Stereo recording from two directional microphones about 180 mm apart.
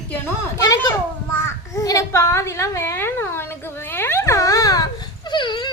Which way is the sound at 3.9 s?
15° left (ahead or behind).